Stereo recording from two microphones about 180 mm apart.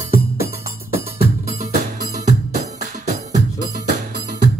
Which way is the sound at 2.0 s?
40° right (ahead or behind).